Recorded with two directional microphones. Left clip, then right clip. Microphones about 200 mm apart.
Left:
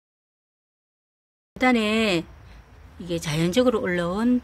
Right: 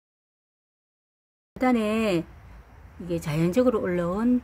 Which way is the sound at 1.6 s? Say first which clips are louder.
Left 3 dB; 5° left (ahead or behind).